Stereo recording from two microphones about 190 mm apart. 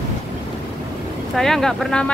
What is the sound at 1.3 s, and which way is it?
Speech, centre (ahead or behind).